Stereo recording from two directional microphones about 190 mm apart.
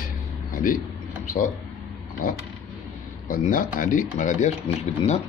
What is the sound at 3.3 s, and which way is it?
Speech, 45° left (ahead or behind).